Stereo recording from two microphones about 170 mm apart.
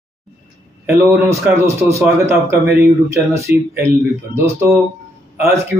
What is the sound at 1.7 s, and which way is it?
Speech, 15° right (ahead or behind).